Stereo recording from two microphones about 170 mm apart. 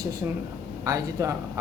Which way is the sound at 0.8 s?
20° right (ahead or behind).